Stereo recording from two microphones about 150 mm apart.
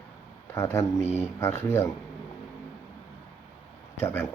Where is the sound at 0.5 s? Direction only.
20° left (ahead or behind).